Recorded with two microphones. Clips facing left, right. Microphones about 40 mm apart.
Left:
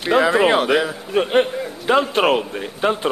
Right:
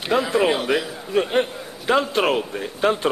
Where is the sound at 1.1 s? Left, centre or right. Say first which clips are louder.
Left 3 dB; centre.